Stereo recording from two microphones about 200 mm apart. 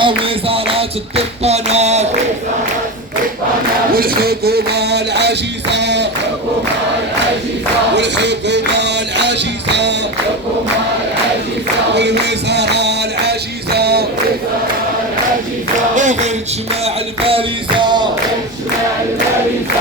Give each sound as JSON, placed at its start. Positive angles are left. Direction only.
{"t": 0.0, "sound": "music", "side_deg": -25}
{"t": 3.9, "sound": "music", "side_deg": -50}
{"t": 7.9, "sound": "music", "side_deg": -60}
{"t": 11.9, "sound": "music", "side_deg": -60}
{"t": 16.0, "sound": "music", "side_deg": -35}